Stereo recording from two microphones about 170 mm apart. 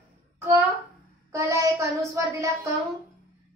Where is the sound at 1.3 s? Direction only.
20° right (ahead or behind).